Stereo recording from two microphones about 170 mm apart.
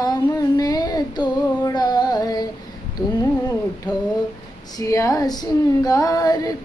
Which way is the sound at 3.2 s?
15° left (ahead or behind).